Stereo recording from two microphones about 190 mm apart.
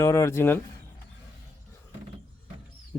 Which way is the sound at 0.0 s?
15° left (ahead or behind).